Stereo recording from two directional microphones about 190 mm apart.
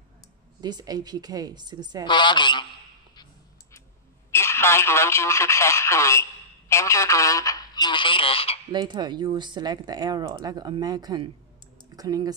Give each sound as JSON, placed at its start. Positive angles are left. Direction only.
{"t": 0.6, "sound": "speech", "side_deg": -20}
{"t": 2.0, "sound": "a woman's voice", "side_deg": 25}
{"t": 4.3, "sound": "speech", "side_deg": 15}
{"t": 8.7, "sound": "speech", "side_deg": -25}